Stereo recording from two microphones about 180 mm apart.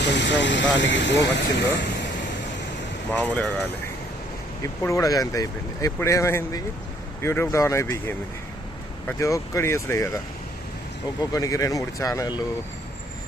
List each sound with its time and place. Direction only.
0.0 s speech: 75° left (ahead or behind)
1.7 s vehicle: 80° left
3.1 s speech: 10° left (ahead or behind)
4.6 s speech: 15° left (ahead or behind)
11.2 s speech: 20° left (ahead or behind)